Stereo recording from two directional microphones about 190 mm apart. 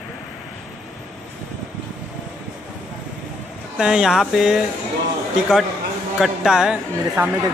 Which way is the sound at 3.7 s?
5° right (ahead or behind).